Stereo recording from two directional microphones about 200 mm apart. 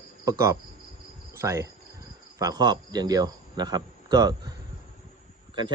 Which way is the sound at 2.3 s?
20° right (ahead or behind).